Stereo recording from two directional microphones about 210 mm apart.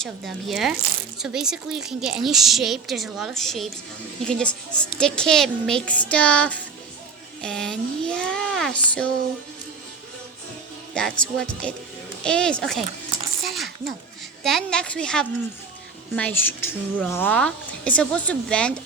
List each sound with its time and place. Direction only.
0.0 s a woman's voice: centre (ahead or behind)
10.9 s a woman's voice: 5° left (ahead or behind)
13.4 s a sound: centre (ahead or behind)
14.4 s a woman's voice: centre (ahead or behind)